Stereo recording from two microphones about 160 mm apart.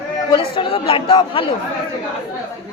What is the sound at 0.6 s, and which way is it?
Speech, 35° left (ahead or behind).